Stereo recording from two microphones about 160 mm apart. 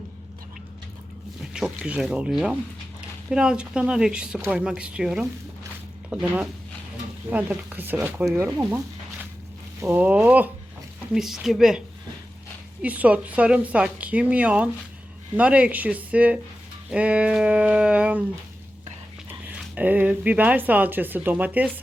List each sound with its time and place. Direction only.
1.5 s speech: 5° right (ahead or behind)
9.8 s speech: 10° right (ahead or behind)
12.8 s speech: 10° right (ahead or behind)
19.5 s speech: 10° right (ahead or behind)